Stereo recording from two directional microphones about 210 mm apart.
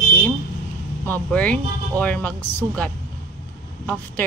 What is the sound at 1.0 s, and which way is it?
Speech, 5° left (ahead or behind).